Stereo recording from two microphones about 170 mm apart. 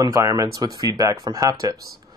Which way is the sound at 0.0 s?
20° right (ahead or behind).